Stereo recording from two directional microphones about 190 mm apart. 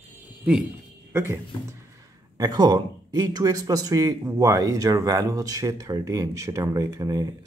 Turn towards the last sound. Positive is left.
turn(degrees=-15)  # may be behind; listen again after turning